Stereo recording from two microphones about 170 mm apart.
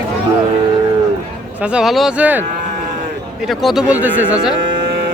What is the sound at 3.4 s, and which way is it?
Speech, centre (ahead or behind).